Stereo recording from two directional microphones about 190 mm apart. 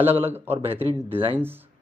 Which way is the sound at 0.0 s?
10° right (ahead or behind).